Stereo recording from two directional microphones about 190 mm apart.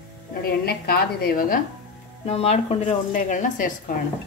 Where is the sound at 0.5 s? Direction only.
55° left (ahead or behind).